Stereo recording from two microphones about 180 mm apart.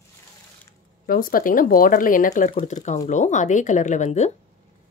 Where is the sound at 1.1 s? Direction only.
50° left (ahead or behind).